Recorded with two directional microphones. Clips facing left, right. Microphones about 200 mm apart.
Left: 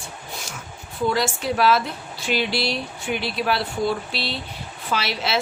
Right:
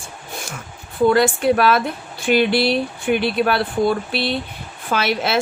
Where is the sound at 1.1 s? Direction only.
55° right (ahead or behind).